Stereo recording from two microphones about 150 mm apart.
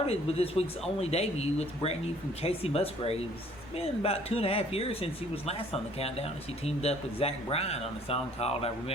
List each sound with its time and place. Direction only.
0.1 s speech: 40° left (ahead or behind)